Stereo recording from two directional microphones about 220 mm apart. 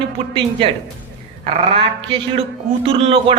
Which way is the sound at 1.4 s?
25° right (ahead or behind).